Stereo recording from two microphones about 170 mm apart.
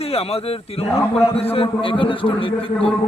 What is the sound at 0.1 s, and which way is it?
A man's voice, 35° left (ahead or behind).